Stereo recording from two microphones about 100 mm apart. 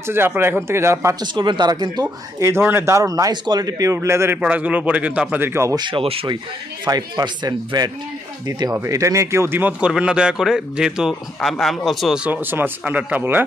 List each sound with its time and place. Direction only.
0.0 s speech: 25° right (ahead or behind)
1.2 s speech: 50° right (ahead or behind)
2.4 s a man's voice: 25° right (ahead or behind)
4.4 s speech: 15° right (ahead or behind)
5.4 s speech: 25° right (ahead or behind)
5.8 s speech: 55° right (ahead or behind)
6.8 s a man's voice: 40° right (ahead or behind)
8.7 s a man's voice: 30° right (ahead or behind); by 12.2 s centre (ahead or behind)
12.2 s speech: 20° right (ahead or behind)